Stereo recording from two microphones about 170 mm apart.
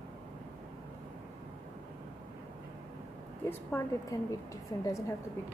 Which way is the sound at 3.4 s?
15° left (ahead or behind).